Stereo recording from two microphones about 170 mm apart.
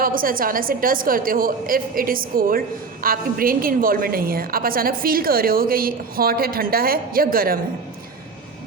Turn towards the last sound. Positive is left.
turn(degrees=-60)  # may be behind; listen again after turning